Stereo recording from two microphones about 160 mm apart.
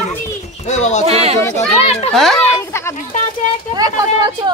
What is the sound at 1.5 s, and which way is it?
Speech, 40° left (ahead or behind).